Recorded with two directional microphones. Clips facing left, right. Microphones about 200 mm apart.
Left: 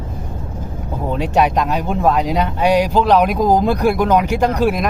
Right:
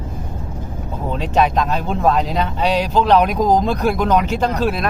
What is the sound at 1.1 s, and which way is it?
Speech, 10° left (ahead or behind).